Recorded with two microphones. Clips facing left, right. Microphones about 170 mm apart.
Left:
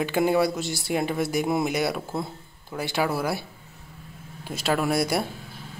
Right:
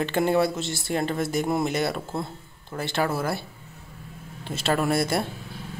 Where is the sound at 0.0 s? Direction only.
5° left (ahead or behind).